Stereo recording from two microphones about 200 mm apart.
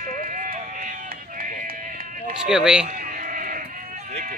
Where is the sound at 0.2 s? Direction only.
40° right (ahead or behind).